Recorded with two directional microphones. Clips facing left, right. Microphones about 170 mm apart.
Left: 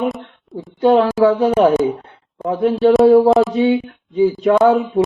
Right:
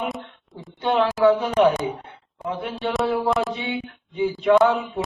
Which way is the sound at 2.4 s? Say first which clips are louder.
Left 12 dB; 40° left (ahead or behind).